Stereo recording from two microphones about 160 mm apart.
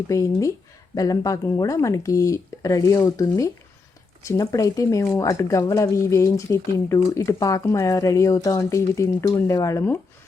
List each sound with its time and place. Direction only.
0.1 s speech: 20° left (ahead or behind)